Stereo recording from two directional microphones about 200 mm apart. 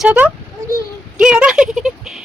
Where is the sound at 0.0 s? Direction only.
5° right (ahead or behind).